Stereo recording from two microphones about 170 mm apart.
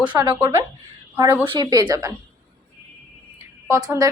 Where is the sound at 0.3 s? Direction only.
15° right (ahead or behind).